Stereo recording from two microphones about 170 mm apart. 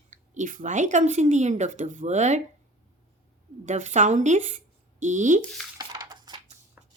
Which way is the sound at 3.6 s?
45° right (ahead or behind).